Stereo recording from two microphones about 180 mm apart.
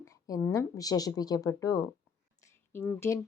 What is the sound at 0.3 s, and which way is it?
A woman's voice, 20° left (ahead or behind).